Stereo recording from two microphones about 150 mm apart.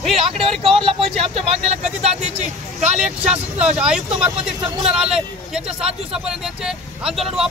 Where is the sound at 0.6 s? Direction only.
35° right (ahead or behind).